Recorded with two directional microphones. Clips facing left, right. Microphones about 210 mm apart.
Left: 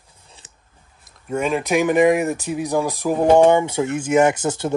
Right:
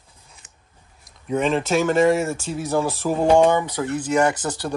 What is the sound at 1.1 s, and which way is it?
Speech, 5° left (ahead or behind).